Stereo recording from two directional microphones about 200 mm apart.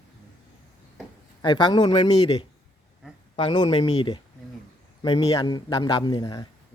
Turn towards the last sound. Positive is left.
turn(degrees=20)  # may be behind; listen again after turning